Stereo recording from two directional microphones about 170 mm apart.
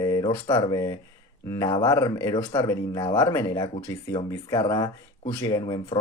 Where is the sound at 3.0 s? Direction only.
25° left (ahead or behind).